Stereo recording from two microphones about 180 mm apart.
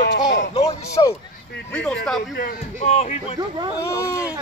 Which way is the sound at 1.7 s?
5° left (ahead or behind).